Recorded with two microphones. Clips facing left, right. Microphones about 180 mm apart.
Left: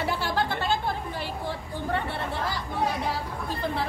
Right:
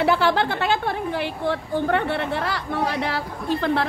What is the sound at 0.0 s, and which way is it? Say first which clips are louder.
Speech: right 8 dB; 70° right (ahead or behind).